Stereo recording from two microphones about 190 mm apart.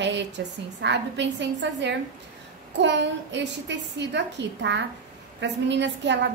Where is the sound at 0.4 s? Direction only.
65° right (ahead or behind).